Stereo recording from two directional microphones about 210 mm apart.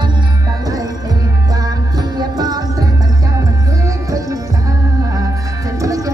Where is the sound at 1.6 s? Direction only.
20° right (ahead or behind).